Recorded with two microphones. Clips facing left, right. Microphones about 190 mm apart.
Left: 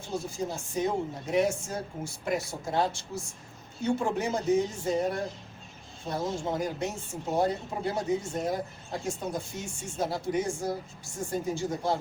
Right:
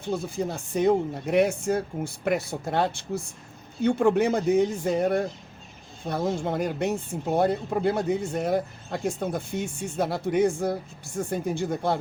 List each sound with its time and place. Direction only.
0.0 s speech: 60° right (ahead or behind)